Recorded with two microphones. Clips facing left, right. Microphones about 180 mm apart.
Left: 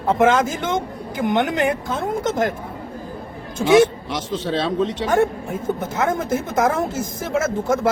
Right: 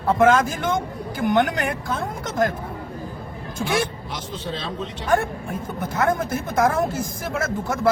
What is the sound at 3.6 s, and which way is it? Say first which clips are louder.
Speech: left 11 dB; 90° left.